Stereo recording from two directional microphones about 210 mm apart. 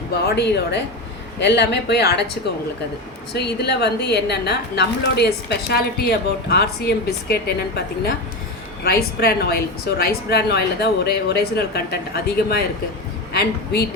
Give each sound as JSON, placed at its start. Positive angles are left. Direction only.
{"t": 0.3, "sound": "a woman's voice", "side_deg": 55}
{"t": 3.3, "sound": "a woman's voice", "side_deg": 50}